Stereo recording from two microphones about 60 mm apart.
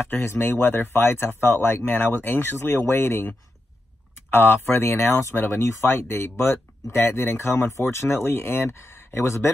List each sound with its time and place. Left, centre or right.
0.1 s speech: left